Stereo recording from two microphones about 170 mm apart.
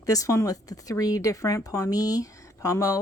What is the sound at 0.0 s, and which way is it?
Speech, 20° left (ahead or behind).